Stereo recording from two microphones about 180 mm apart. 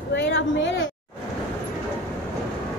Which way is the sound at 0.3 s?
85° left.